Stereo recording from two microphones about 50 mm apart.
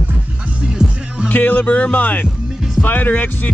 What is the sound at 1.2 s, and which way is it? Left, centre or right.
Speech, left.